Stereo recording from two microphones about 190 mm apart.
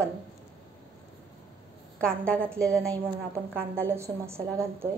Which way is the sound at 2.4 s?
15° right (ahead or behind).